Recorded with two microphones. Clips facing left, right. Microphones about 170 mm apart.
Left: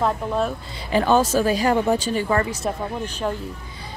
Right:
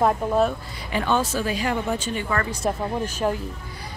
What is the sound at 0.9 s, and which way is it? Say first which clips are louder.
A woman's voice: left 5 dB; 35° left (ahead or behind).